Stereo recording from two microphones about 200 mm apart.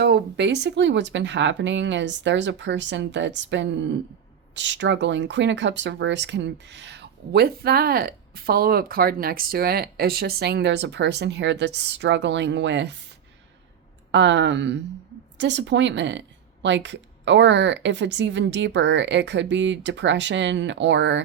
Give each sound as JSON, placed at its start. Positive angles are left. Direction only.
{"t": 0.0, "sound": "speech", "side_deg": -60}
{"t": 14.1, "sound": "speech", "side_deg": -60}